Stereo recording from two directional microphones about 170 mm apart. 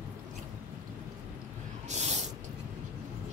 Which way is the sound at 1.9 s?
40° right (ahead or behind).